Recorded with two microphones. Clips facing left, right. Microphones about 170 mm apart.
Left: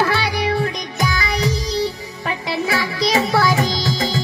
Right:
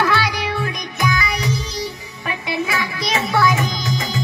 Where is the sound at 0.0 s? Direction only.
30° left (ahead or behind).